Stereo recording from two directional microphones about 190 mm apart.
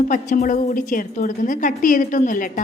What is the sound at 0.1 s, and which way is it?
A woman's voice, 45° left (ahead or behind).